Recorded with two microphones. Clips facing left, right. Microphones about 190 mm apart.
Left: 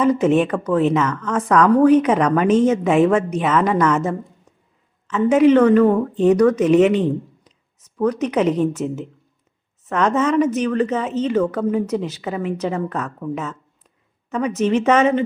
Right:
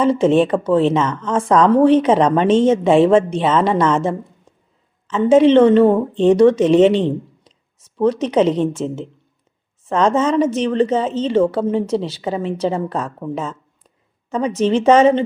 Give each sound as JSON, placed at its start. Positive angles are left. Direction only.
{"t": 0.0, "sound": "a woman's voice", "side_deg": -30}